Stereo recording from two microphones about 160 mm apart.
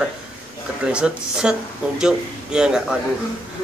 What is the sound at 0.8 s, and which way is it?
A man's voice, 5° right (ahead or behind).